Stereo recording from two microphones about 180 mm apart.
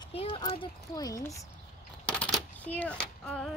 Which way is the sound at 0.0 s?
30° left (ahead or behind).